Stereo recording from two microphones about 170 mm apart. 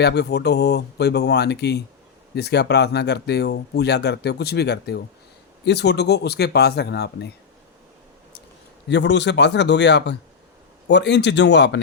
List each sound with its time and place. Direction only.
0.0 s speech: 80° left
8.9 s speech: 90° left